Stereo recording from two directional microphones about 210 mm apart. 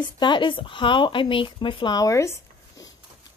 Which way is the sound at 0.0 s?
20° left (ahead or behind).